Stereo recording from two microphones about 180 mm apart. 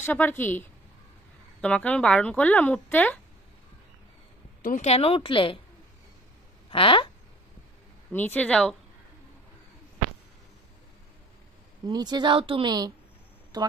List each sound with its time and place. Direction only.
0.0 s speech: 10° left (ahead or behind)
4.6 s speech: 50° left (ahead or behind)
4.8 s speech: 35° left (ahead or behind)
6.7 s speech: 30° left (ahead or behind)
8.1 s speech: 10° left (ahead or behind)
11.9 s a woman's voice: 25° right (ahead or behind)